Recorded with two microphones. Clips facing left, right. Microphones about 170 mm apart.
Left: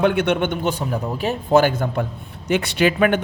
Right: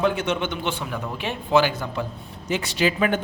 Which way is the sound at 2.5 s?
65° left (ahead or behind).